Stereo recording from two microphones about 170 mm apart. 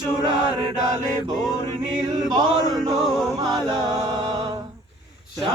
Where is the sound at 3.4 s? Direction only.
25° right (ahead or behind).